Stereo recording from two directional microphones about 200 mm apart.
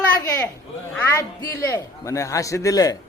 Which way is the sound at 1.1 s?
15° left (ahead or behind).